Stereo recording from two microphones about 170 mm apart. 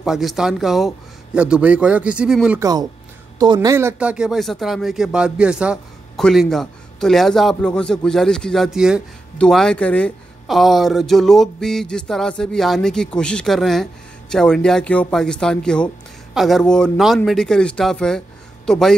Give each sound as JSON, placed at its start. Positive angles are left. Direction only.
{"t": 0.0, "sound": "speech", "side_deg": 0}
{"t": 3.3, "sound": "speech", "side_deg": -25}
{"t": 3.7, "sound": "speech", "side_deg": -10}